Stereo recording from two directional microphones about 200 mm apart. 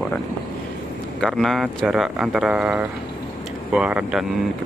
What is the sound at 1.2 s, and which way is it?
Speech, centre (ahead or behind).